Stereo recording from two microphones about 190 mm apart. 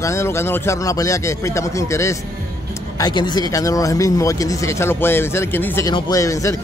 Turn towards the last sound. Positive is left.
turn(degrees=15)  # may be behind; listen again after turning